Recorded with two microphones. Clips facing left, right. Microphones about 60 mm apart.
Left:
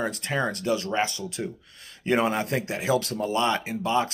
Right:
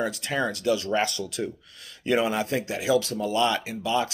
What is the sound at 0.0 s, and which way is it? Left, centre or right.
Speech, left.